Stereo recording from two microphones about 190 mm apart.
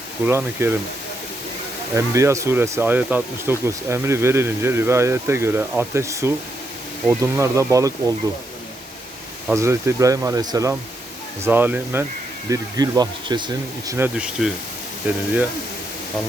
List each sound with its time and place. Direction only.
0.3 s speech: 10° right (ahead or behind)
2.0 s speech: 15° right (ahead or behind)
9.5 s speech: 15° right (ahead or behind)